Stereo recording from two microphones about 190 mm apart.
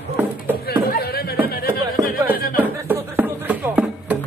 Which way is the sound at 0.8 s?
55° left (ahead or behind).